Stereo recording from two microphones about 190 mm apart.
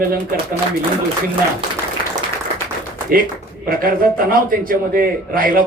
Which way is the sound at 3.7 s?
50° right (ahead or behind).